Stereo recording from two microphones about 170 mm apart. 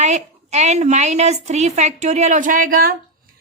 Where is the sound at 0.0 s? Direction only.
40° right (ahead or behind).